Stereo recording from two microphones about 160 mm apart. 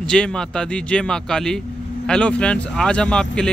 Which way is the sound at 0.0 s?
5° left (ahead or behind).